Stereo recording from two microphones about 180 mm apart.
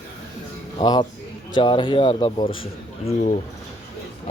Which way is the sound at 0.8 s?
25° left (ahead or behind).